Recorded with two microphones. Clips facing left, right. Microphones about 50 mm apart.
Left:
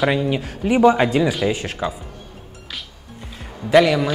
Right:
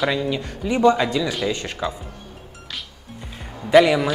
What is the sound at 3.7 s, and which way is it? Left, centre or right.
Speech, centre.